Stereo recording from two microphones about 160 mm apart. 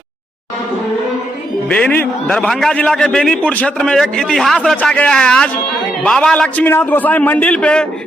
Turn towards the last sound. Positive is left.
turn(degrees=5)  # may be behind; listen again after turning